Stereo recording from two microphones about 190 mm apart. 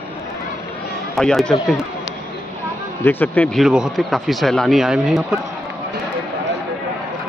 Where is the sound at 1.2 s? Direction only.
Centre (ahead or behind).